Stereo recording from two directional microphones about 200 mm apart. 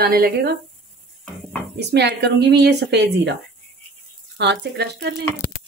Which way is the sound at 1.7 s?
55° right (ahead or behind).